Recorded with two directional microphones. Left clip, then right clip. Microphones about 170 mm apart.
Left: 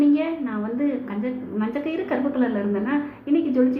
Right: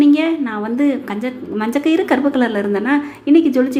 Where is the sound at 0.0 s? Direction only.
40° right (ahead or behind).